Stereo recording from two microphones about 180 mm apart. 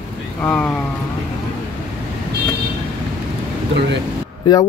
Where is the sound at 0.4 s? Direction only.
10° left (ahead or behind).